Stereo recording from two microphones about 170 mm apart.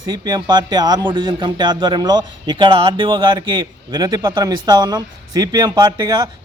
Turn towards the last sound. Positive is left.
turn(degrees=-25)  # may be behind; listen again after turning